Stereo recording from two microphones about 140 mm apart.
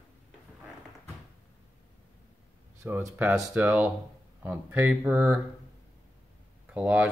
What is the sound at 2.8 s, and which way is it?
Speech, 15° right (ahead or behind).